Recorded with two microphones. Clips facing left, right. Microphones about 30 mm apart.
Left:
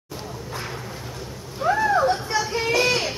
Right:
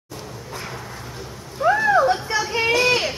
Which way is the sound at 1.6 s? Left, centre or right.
Centre.